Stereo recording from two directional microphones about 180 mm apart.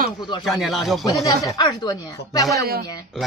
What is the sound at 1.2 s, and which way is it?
Speech, 20° left (ahead or behind).